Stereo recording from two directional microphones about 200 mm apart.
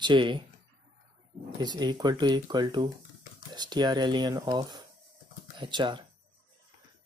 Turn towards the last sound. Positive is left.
turn(degrees=-25)  # may be behind; listen again after turning